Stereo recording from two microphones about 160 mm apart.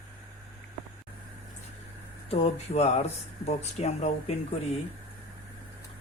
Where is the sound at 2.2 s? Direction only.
40° left (ahead or behind).